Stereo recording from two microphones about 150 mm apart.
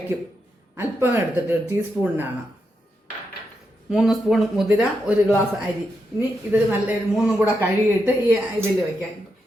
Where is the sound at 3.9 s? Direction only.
Centre (ahead or behind).